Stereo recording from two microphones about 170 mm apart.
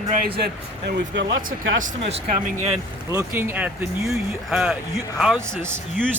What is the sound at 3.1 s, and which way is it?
Speech, 15° right (ahead or behind).